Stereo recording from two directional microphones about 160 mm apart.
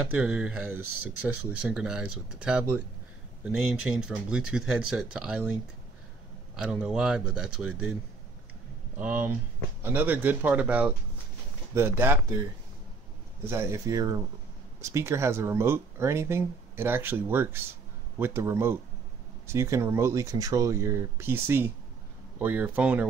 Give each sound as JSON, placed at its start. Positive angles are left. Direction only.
{"t": 0.1, "sound": "speech", "side_deg": -5}
{"t": 6.5, "sound": "speech", "side_deg": -5}
{"t": 13.5, "sound": "speech", "side_deg": -20}